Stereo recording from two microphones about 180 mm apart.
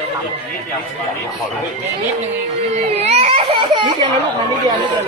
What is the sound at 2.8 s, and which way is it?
A child's voice, 35° right (ahead or behind).